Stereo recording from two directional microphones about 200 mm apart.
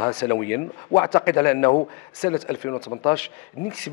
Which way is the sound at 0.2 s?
10° left (ahead or behind).